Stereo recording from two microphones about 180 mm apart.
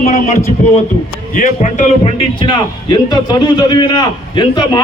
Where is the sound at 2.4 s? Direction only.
25° left (ahead or behind).